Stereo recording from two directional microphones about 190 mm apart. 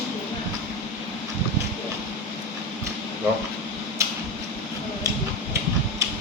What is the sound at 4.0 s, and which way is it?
Tick-tock, 15° right (ahead or behind).